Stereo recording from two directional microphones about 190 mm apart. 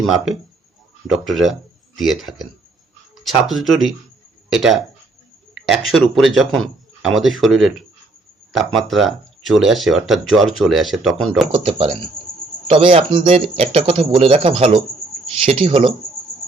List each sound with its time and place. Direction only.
1.1 s speech: centre (ahead or behind)
11.5 s a man's voice: 30° right (ahead or behind)